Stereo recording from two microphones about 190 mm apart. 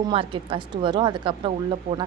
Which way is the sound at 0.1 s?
30° right (ahead or behind).